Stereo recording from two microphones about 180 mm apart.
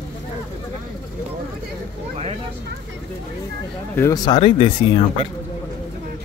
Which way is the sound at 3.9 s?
20° left (ahead or behind).